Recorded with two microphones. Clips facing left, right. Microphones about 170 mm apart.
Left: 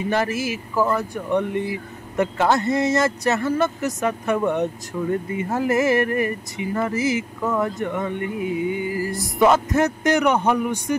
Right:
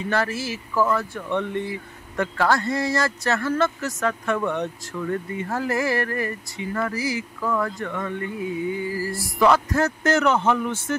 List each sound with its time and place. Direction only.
0.1 s speech: 20° left (ahead or behind)